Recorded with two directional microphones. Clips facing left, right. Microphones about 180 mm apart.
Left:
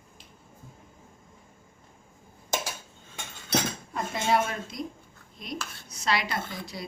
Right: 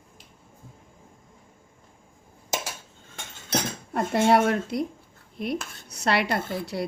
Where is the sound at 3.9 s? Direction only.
65° right (ahead or behind).